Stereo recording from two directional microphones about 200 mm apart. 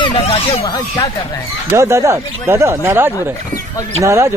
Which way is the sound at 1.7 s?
15° right (ahead or behind).